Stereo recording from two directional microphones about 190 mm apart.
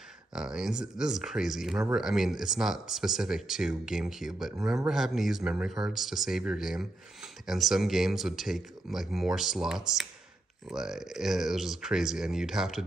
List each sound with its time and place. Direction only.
0.3 s speech: 5° right (ahead or behind)